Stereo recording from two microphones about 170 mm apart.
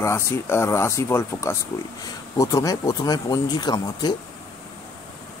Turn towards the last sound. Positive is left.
turn(degrees=25)  # may be behind; listen again after turning